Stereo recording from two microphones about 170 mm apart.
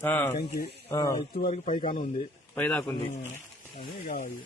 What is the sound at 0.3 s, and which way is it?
Speech, 65° left (ahead or behind).